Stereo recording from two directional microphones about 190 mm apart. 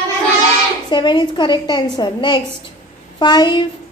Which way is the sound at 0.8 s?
25° left (ahead or behind).